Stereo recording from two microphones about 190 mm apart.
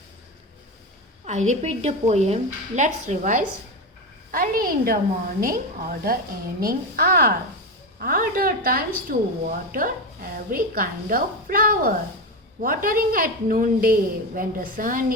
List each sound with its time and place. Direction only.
1.2 s a woman's voice: 40° right (ahead or behind)